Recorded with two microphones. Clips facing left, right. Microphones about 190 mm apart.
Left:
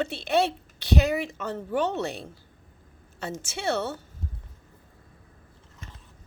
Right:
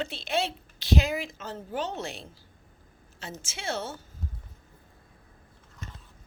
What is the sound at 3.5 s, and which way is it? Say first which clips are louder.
Speech: left 5 dB; 65° left (ahead or behind).